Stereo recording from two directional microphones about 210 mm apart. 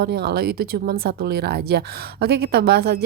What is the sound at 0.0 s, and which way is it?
A woman's voice, 50° right (ahead or behind).